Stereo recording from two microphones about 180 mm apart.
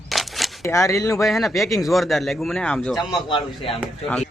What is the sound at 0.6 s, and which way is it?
Speech, 15° left (ahead or behind).